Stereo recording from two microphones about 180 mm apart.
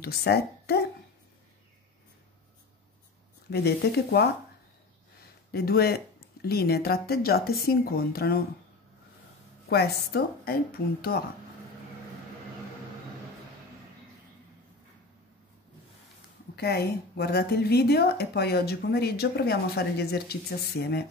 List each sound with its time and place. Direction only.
0.0 s a woman's voice: 60° left (ahead or behind)
3.4 s a woman's voice: 65° left (ahead or behind)
5.5 s a woman's voice: 60° left (ahead or behind)
9.7 s a woman's voice: 60° left (ahead or behind)
16.5 s a woman's voice: 65° left (ahead or behind)